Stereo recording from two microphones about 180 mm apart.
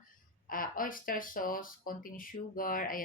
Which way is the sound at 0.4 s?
50° left (ahead or behind).